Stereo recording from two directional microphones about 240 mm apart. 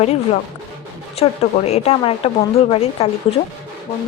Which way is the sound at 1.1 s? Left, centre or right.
Left.